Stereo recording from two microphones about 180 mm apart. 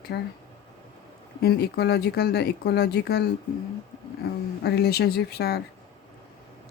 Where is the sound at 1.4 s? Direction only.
60° left (ahead or behind).